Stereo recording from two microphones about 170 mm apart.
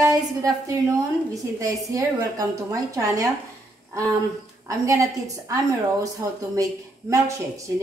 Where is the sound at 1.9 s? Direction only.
20° right (ahead or behind).